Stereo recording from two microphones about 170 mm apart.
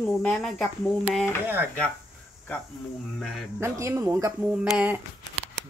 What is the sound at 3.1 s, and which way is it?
Speech, centre (ahead or behind).